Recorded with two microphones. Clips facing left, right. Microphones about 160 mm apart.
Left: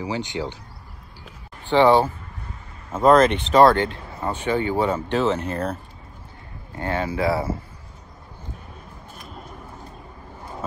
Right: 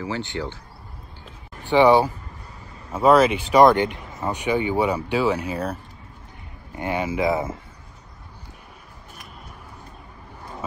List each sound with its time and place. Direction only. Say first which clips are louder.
0.0 s speech: left 1 dB; 15° left (ahead or behind)
1.7 s speech: even; 15° right (ahead or behind)